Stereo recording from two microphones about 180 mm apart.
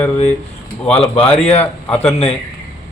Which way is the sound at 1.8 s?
10° left (ahead or behind).